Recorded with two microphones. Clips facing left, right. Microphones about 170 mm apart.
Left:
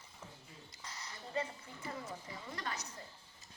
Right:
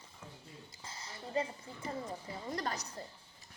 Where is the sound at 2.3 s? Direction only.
40° right (ahead or behind).